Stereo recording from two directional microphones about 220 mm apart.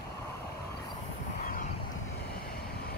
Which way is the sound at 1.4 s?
35° left (ahead or behind).